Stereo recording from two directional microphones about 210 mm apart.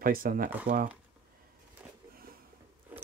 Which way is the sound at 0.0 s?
40° right (ahead or behind).